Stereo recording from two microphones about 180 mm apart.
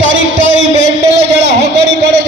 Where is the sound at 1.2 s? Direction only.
75° right (ahead or behind).